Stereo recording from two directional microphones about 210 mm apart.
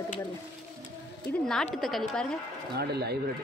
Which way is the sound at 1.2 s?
5° left (ahead or behind).